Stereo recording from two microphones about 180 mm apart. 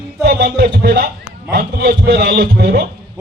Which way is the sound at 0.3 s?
60° right (ahead or behind).